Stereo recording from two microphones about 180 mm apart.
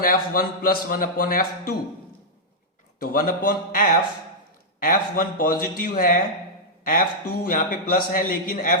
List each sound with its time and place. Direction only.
0.0 s speech: 50° left (ahead or behind)
3.0 s speech: 50° left (ahead or behind)